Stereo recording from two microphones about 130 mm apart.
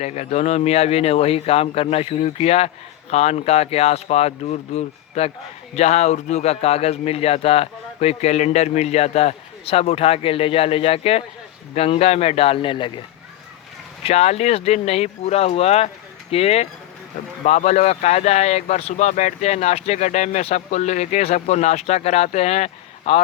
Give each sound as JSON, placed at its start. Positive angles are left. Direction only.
{"t": 0.0, "sound": "a man's voice", "side_deg": 60}
{"t": 14.0, "sound": "a man's voice", "side_deg": 55}